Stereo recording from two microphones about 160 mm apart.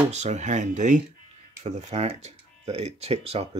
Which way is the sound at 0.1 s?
45° right (ahead or behind).